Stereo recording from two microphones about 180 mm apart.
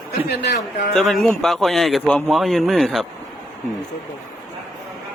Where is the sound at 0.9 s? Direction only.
Centre (ahead or behind).